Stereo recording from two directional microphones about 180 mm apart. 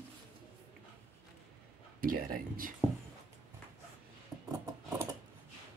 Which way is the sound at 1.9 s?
55° right (ahead or behind).